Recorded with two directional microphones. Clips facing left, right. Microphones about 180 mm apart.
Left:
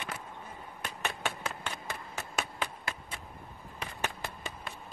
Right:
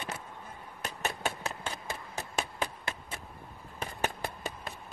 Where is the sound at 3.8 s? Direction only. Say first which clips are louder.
Right 3 dB; 40° right (ahead or behind).